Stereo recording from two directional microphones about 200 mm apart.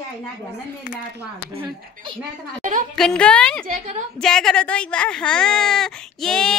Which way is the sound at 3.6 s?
35° right (ahead or behind).